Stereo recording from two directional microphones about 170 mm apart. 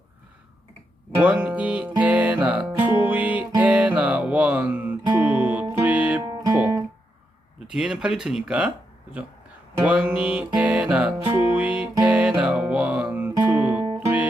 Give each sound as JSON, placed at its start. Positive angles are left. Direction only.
{"t": 1.2, "sound": "music", "side_deg": -10}
{"t": 7.7, "sound": "speech", "side_deg": -5}
{"t": 9.8, "sound": "music", "side_deg": -5}